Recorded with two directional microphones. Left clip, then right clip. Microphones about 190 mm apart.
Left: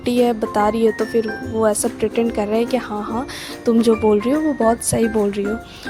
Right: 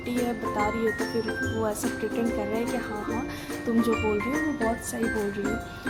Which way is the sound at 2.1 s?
45° left (ahead or behind).